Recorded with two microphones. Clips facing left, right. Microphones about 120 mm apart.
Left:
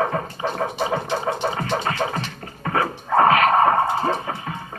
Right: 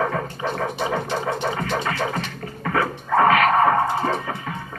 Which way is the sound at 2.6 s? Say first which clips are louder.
Even; 35° left (ahead or behind).